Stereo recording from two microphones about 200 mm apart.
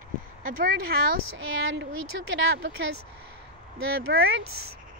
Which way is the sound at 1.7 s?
75° right (ahead or behind).